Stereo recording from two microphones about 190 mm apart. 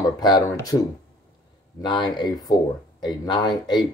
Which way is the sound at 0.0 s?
20° left (ahead or behind).